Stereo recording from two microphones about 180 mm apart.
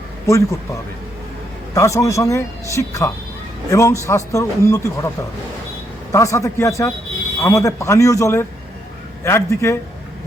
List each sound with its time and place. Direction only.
0.3 s speech: 15° left (ahead or behind)